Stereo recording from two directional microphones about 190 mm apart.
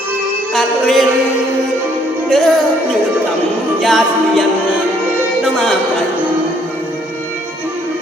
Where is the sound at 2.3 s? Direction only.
Centre (ahead or behind).